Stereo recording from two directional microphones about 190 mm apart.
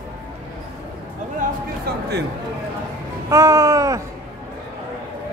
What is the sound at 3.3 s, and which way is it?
Speech, 15° right (ahead or behind).